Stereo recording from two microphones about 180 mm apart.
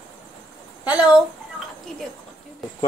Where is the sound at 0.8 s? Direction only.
5° right (ahead or behind).